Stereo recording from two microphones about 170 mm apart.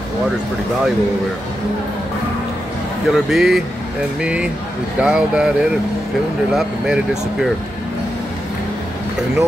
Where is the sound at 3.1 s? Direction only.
Centre (ahead or behind).